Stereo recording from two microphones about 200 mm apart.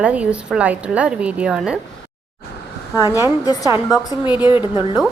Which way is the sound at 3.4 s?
20° left (ahead or behind).